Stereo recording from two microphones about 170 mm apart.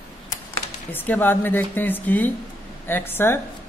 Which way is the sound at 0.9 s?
10° left (ahead or behind).